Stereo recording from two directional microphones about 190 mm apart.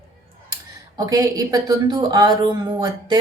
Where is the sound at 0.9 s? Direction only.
20° right (ahead or behind).